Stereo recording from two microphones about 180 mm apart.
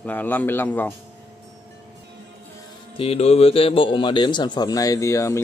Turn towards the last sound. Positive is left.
turn(degrees=15)  # may be behind; listen again after turning